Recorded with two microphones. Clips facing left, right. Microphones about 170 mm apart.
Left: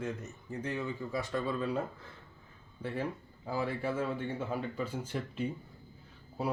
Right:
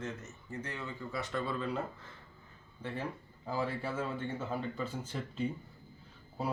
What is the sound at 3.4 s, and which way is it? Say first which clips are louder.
Speech: left 1 dB; 10° left (ahead or behind).